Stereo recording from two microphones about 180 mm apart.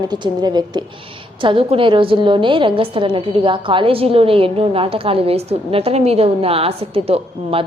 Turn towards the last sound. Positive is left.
turn(degrees=-30)  # may be behind; listen again after turning